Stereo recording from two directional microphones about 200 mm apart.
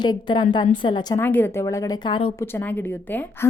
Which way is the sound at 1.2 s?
10° left (ahead or behind).